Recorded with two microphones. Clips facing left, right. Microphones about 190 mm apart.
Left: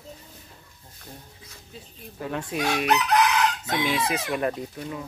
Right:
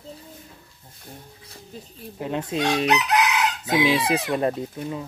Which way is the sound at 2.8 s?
5° right (ahead or behind).